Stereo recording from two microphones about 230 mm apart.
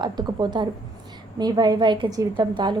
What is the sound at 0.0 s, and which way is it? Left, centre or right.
A woman's voice, centre.